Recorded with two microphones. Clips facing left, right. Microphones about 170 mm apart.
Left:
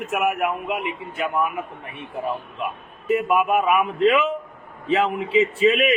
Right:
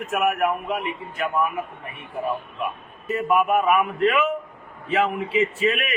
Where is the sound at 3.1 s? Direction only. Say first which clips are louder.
Left 1 dB; 15° left (ahead or behind).